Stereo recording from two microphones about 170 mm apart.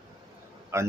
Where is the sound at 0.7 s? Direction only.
15° right (ahead or behind).